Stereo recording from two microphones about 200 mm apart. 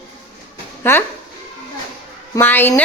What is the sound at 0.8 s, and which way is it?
Speech, 10° left (ahead or behind).